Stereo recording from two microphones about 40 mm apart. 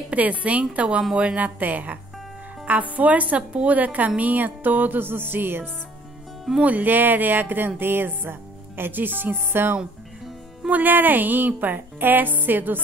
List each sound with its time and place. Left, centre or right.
0.1 s speech: right
6.6 s speech: right
10.7 s speech: right